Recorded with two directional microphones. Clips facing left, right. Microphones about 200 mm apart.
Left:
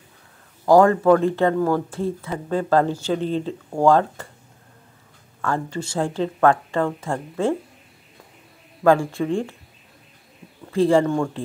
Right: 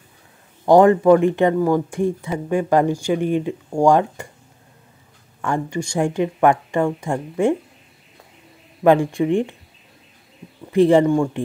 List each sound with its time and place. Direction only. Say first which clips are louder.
0.7 s speech: right 2 dB; 20° right (ahead or behind)
5.4 s speech: right 2 dB; 15° right (ahead or behind)
8.8 s speech: right 3 dB; 15° right (ahead or behind)
10.7 s speech: right 4 dB; 20° right (ahead or behind)